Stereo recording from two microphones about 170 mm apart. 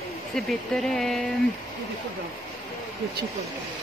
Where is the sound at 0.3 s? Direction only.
Centre (ahead or behind).